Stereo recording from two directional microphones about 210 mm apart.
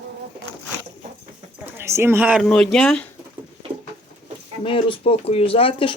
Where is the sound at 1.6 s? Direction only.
10° right (ahead or behind).